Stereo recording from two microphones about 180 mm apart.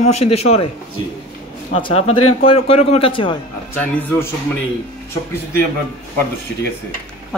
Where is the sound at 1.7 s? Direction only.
30° left (ahead or behind).